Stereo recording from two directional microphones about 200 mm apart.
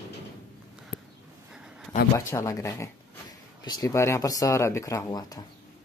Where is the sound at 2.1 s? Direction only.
15° left (ahead or behind).